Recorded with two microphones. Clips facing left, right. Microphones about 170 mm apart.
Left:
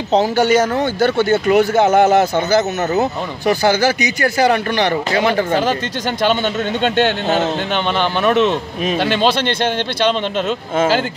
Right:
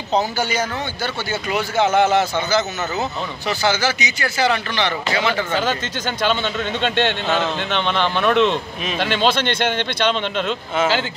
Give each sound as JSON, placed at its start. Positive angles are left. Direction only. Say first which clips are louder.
{"t": 0.1, "sound": "speech", "louder": "left 7 dB", "side_deg": 80}
{"t": 0.7, "sound": "speech", "louder": "left 11 dB", "side_deg": 55}
{"t": 6.8, "sound": "speech", "louder": "left 4 dB", "side_deg": 40}
{"t": 7.9, "sound": "speech", "louder": "left 2 dB", "side_deg": 10}
{"t": 8.4, "sound": "a man's voice", "louder": "left 2 dB", "side_deg": 45}
{"t": 10.3, "sound": "speech", "louder": "left 3 dB", "side_deg": 45}